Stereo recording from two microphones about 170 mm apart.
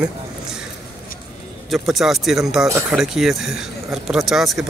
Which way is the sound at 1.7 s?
Centre (ahead or behind).